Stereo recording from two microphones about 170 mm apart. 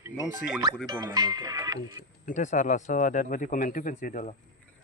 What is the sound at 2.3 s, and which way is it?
Speech, 45° left (ahead or behind).